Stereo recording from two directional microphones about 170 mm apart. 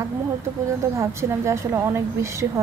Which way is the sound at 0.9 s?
15° right (ahead or behind).